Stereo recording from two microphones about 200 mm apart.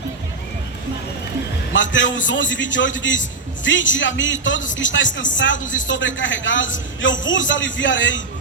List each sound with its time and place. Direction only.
1.7 s a woman's voice: 65° left (ahead or behind)